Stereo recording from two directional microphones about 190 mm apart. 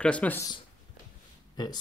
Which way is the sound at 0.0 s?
5° left (ahead or behind).